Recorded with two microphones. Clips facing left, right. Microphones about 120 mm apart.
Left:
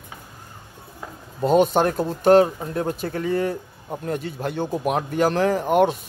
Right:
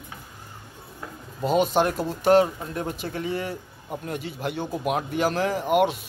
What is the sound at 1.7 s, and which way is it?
Speech, 45° left (ahead or behind).